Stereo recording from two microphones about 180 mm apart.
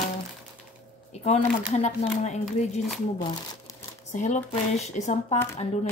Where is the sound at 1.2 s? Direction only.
40° left (ahead or behind).